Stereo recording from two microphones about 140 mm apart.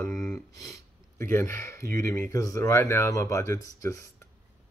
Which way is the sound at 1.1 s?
20° left (ahead or behind).